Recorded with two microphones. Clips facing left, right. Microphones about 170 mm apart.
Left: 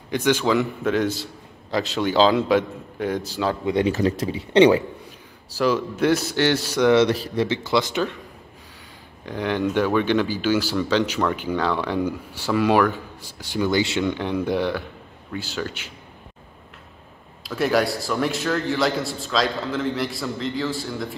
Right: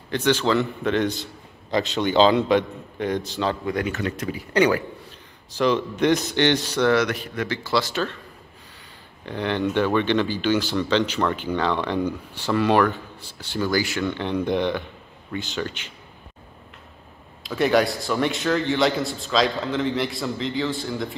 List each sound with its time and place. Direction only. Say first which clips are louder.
0.1 s a man's voice: left 1 dB; 10° left (ahead or behind)
3.6 s speech: left 5 dB; 30° left (ahead or behind)
5.5 s a man's voice: even; 5° left (ahead or behind)
7.0 s speech: left 5 dB; 30° left (ahead or behind)
9.2 s speech: left 1 dB; 10° left (ahead or behind)
13.7 s speech: left 2 dB; 25° left (ahead or behind)
14.1 s speech: even; 10° left (ahead or behind)
17.4 s a man's voice: right 1 dB; centre (ahead or behind)